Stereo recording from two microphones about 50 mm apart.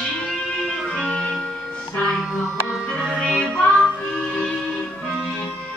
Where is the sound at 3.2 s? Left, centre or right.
Centre.